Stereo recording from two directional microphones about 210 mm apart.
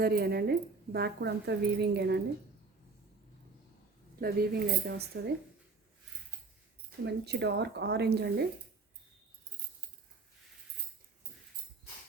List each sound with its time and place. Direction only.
0.0 s speech: 50° right (ahead or behind)
4.2 s speech: 45° right (ahead or behind)
7.0 s speech: 55° right (ahead or behind)